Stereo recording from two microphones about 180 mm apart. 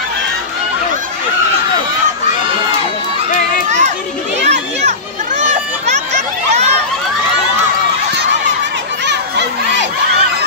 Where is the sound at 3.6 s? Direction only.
40° right (ahead or behind).